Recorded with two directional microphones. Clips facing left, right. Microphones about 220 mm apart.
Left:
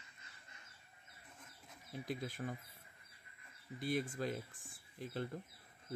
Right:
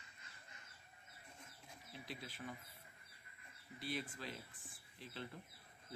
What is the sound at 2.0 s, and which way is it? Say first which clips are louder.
Speech: left 8 dB; 50° left (ahead or behind).